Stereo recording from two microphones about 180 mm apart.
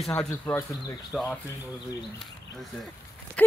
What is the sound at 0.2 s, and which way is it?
Speech, 10° left (ahead or behind).